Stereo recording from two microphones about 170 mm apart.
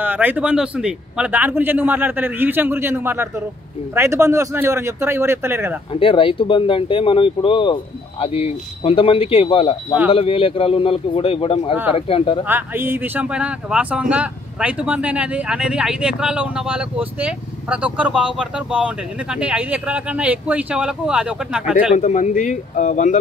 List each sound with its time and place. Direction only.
0.0 s speech: 10° right (ahead or behind)
5.9 s speech: 30° left (ahead or behind)
12.4 s speech: 10° right (ahead or behind)
21.9 s speech: 45° left (ahead or behind)